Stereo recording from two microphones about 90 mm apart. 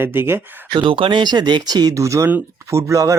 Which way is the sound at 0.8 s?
75° right (ahead or behind).